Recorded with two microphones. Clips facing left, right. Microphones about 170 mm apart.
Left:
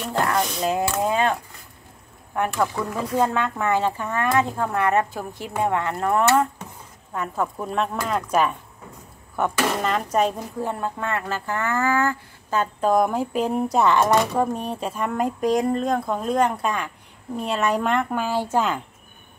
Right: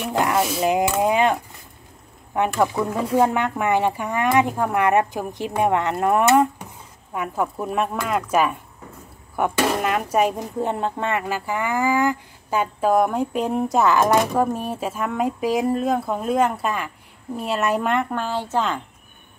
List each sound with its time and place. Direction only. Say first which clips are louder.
0.0 s speech: right 2 dB; 15° right (ahead or behind)
0.7 s speech: right 4 dB; 15° right (ahead or behind)
10.6 s speech: right 3 dB; 20° right (ahead or behind); by 18.0 s centre (ahead or behind)
18.1 s speech: left 1 dB; 10° left (ahead or behind)